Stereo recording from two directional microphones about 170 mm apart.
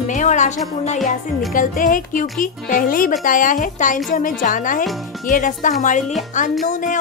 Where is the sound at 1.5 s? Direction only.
50° left (ahead or behind).